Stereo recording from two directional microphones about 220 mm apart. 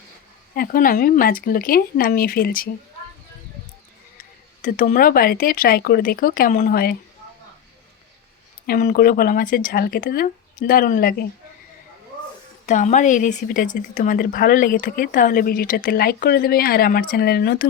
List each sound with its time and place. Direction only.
0.5 s speech: 40° left (ahead or behind)
4.6 s speech: 35° left (ahead or behind)
8.6 s speech: 45° left (ahead or behind)
12.6 s speech: 35° left (ahead or behind)